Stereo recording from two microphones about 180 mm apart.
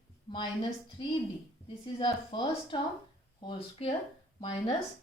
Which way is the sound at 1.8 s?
25° left (ahead or behind).